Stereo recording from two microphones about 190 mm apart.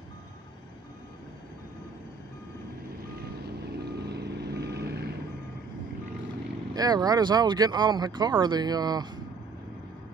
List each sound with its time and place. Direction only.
3.7 s reversing beeps: 60° right (ahead or behind)
6.7 s speech: 20° right (ahead or behind)